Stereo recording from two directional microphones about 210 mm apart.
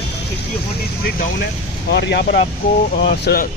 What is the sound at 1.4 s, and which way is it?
Speech, 55° left (ahead or behind).